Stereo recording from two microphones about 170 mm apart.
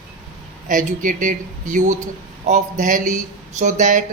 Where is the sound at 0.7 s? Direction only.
50° right (ahead or behind).